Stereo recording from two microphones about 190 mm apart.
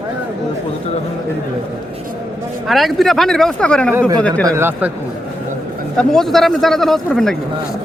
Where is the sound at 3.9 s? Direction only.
15° right (ahead or behind).